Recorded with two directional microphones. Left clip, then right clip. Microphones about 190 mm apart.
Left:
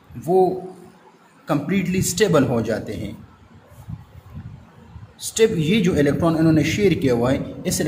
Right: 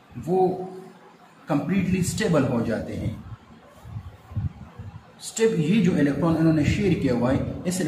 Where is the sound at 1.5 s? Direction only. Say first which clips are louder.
Left 3 dB; 55° left (ahead or behind).